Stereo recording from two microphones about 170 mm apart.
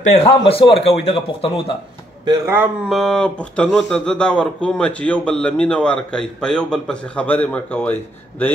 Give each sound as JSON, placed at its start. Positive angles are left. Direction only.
{"t": 0.0, "sound": "a man's voice", "side_deg": 35}
{"t": 2.4, "sound": "speech", "side_deg": -15}
{"t": 2.9, "sound": "speech", "side_deg": 5}